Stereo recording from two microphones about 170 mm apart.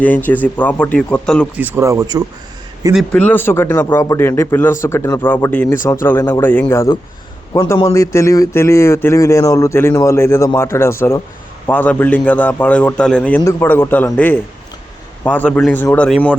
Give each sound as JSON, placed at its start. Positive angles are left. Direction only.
{"t": 0.0, "sound": "speech", "side_deg": 10}
{"t": 1.5, "sound": "speech", "side_deg": -10}
{"t": 2.9, "sound": "speech", "side_deg": 5}